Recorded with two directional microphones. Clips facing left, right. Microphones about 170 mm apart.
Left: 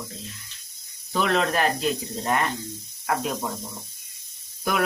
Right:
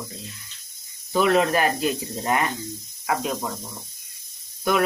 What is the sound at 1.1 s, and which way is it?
Speech, 5° right (ahead or behind).